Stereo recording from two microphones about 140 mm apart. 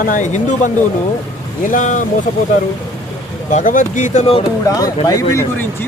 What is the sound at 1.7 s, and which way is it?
Speech, 65° left (ahead or behind).